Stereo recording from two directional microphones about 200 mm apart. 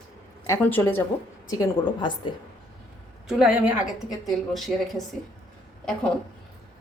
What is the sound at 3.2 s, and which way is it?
Speech, centre (ahead or behind).